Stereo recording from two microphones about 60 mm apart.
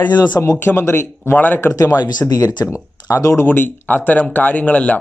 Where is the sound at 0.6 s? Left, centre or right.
Left.